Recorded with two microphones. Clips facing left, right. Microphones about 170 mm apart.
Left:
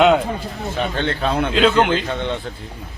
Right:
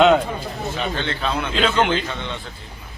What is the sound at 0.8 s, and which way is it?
Speech, 50° left (ahead or behind).